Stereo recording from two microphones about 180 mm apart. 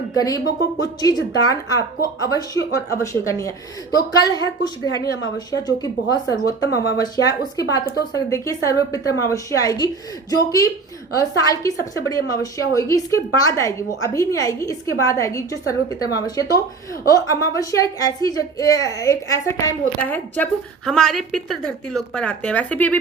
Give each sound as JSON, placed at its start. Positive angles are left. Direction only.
{"t": 0.2, "sound": "a woman's voice", "side_deg": 20}